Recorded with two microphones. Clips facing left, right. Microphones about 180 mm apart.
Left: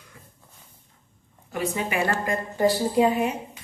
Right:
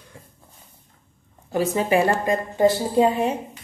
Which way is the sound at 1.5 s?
35° right (ahead or behind).